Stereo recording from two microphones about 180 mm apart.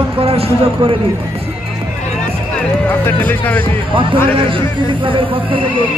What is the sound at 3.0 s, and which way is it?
Speech, 10° left (ahead or behind).